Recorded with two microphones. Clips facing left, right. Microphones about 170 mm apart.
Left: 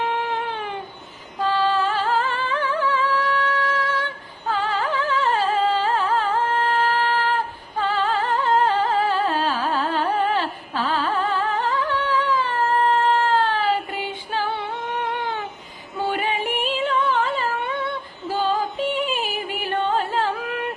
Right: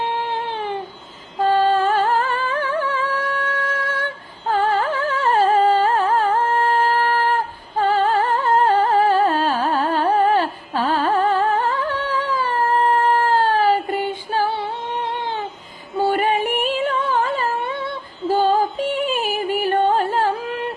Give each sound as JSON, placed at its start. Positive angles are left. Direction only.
{"t": 0.0, "sound": "a sound", "side_deg": -30}
{"t": 1.4, "sound": "singing", "side_deg": -50}
{"t": 3.6, "sound": "music", "side_deg": -50}
{"t": 16.0, "sound": "singing", "side_deg": -40}
{"t": 18.3, "sound": "yodeling", "side_deg": -45}
{"t": 20.5, "sound": "yodeling", "side_deg": -30}